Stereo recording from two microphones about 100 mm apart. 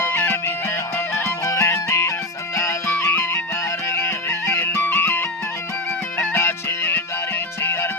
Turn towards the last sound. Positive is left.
turn(degrees=25)  # may be behind; listen again after turning